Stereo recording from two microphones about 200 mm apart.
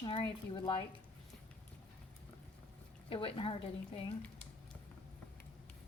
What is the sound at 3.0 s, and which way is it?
Speech, 25° left (ahead or behind).